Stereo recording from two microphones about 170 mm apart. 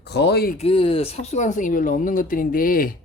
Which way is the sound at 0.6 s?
30° left (ahead or behind).